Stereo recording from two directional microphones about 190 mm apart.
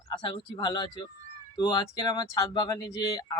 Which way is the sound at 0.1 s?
30° left (ahead or behind).